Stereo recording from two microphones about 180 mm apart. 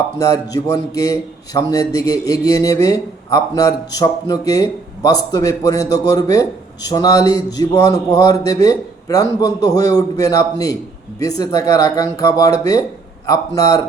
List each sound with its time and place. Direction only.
0.2 s a man's voice: 20° left (ahead or behind)